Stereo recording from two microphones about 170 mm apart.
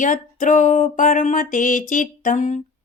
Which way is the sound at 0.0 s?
50° left (ahead or behind).